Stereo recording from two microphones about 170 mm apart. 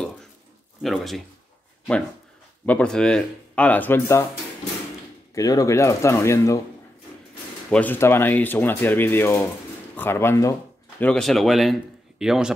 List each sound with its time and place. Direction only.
0.8 s speech: centre (ahead or behind)
2.6 s speech: 5° left (ahead or behind)
5.3 s speech: 20° left (ahead or behind)
7.7 s speech: 10° left (ahead or behind)
11.0 s speech: 5° left (ahead or behind)